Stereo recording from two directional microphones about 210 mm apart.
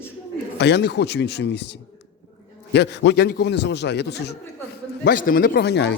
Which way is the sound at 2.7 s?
55° left (ahead or behind).